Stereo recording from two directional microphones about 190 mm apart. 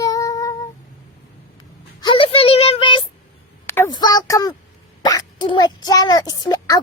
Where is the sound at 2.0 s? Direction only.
25° left (ahead or behind).